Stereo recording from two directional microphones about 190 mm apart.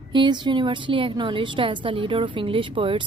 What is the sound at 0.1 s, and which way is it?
A woman's voice, 25° right (ahead or behind).